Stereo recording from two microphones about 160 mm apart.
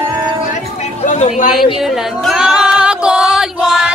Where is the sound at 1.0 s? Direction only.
50° left (ahead or behind).